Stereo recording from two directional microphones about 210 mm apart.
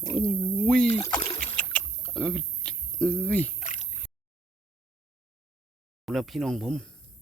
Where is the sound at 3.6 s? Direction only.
35° left (ahead or behind).